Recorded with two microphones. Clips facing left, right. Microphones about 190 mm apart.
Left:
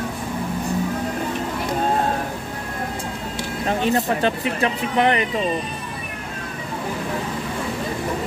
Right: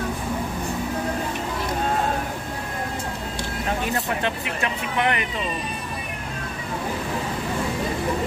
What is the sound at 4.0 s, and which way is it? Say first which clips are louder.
Speech: left 5 dB; 35° left (ahead or behind).